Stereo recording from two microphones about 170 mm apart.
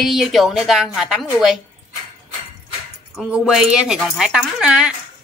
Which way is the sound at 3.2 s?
5° right (ahead or behind).